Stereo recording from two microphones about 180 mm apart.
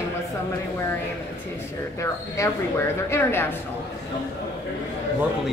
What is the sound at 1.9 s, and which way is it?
A woman's voice, 15° left (ahead or behind).